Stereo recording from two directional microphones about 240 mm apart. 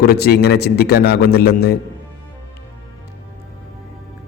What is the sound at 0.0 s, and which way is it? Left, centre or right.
A man's voice, left.